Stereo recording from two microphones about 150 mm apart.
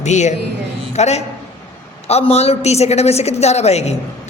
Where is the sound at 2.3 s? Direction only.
45° left (ahead or behind).